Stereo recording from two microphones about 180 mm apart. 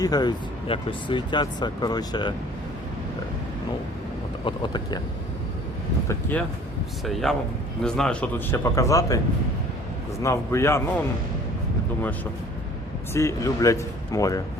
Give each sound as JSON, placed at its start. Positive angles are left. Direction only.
{"t": 0.0, "sound": "speech", "side_deg": 20}
{"t": 4.4, "sound": "speech", "side_deg": 25}
{"t": 6.1, "sound": "speech", "side_deg": 10}
{"t": 10.2, "sound": "speech", "side_deg": 15}
{"t": 13.1, "sound": "speech", "side_deg": 15}